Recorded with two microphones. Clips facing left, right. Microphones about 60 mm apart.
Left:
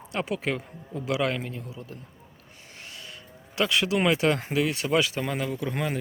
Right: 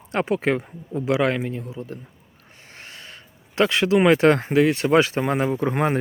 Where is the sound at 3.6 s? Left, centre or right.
Right.